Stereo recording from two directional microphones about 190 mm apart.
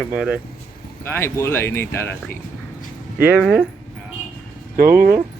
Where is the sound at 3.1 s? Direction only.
10° right (ahead or behind).